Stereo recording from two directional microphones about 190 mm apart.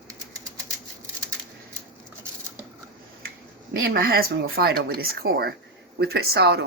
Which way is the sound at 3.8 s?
55° right (ahead or behind).